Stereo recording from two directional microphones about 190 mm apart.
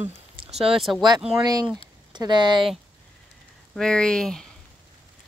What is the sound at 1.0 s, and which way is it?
Speech, 20° right (ahead or behind).